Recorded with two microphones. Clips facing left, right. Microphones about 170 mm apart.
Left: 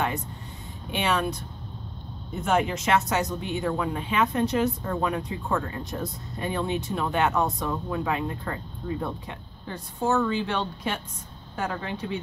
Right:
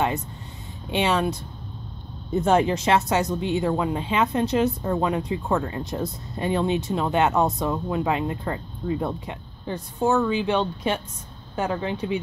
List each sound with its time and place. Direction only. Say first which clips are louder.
0.9 s speech: right 4 dB; 25° right (ahead or behind)
2.4 s speech: right 4 dB; 30° right (ahead or behind)